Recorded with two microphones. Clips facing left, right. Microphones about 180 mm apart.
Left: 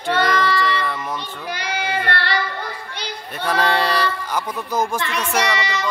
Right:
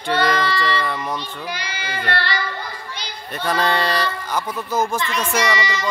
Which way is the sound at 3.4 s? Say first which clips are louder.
Left 1 dB; 10° left (ahead or behind).